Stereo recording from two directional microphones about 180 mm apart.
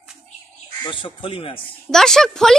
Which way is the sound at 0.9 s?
30° left (ahead or behind).